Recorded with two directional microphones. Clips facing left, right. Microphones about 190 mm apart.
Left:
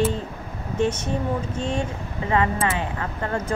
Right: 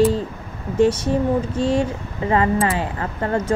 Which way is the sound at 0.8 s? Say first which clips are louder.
Right 7 dB; 35° right (ahead or behind).